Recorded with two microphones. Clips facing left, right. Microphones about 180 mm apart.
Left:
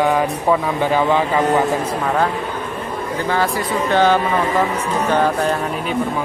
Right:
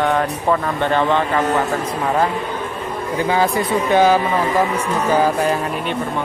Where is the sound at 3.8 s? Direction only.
10° right (ahead or behind).